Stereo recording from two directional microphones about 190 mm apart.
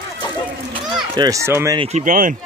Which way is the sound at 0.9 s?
20° right (ahead or behind).